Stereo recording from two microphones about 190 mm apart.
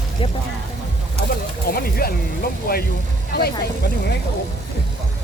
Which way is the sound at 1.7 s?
50° left (ahead or behind).